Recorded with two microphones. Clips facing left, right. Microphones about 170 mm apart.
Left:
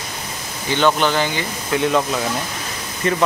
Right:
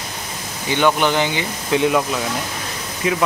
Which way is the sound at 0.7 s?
15° right (ahead or behind).